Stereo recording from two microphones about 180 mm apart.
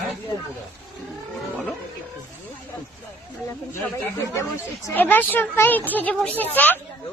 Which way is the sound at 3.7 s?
15° left (ahead or behind).